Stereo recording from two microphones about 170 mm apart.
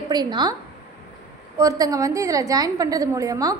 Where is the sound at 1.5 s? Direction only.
20° right (ahead or behind).